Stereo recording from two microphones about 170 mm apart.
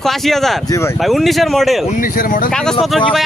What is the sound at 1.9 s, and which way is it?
Speech, 55° left (ahead or behind).